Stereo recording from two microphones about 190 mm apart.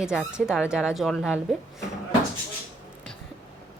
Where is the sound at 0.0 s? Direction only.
5° right (ahead or behind).